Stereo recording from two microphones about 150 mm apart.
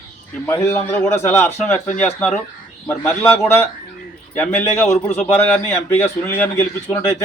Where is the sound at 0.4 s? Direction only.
15° left (ahead or behind).